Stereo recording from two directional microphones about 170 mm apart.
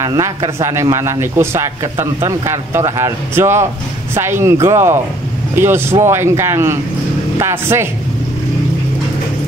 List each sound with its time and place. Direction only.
0.0 s a man's voice: 20° right (ahead or behind)